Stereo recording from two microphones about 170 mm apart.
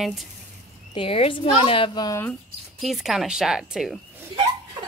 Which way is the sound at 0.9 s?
35° left (ahead or behind).